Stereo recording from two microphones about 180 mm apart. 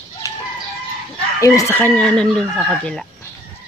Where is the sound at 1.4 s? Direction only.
15° left (ahead or behind); by 3.0 s centre (ahead or behind).